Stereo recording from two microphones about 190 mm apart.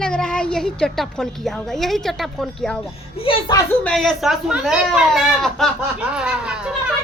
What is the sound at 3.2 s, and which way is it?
Speech, 25° left (ahead or behind).